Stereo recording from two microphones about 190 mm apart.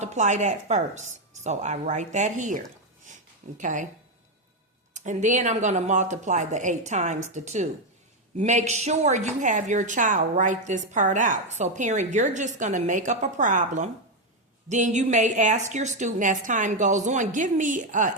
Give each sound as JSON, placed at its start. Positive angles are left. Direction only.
{"t": 0.0, "sound": "a woman's voice", "side_deg": -40}
{"t": 3.6, "sound": "a woman's voice", "side_deg": -40}
{"t": 4.9, "sound": "a woman's voice", "side_deg": -40}